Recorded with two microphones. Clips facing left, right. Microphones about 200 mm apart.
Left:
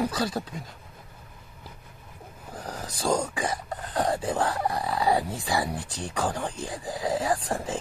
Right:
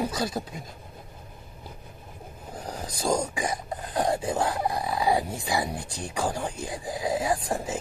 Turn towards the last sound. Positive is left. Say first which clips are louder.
# even
turn(degrees=-10)  # may be behind; listen again after turning